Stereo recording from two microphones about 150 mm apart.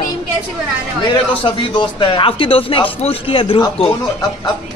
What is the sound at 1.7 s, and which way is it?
A man's voice, 30° left (ahead or behind).